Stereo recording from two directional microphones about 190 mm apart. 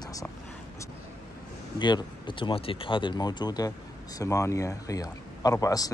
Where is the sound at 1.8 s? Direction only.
25° left (ahead or behind).